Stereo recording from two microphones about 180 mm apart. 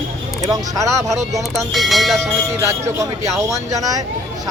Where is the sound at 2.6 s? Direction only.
15° right (ahead or behind).